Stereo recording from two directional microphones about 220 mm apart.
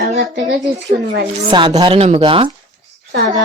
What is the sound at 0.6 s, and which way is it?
Speech, 50° right (ahead or behind).